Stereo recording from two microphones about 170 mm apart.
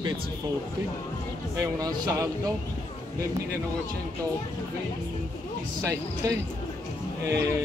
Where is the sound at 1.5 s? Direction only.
20° right (ahead or behind).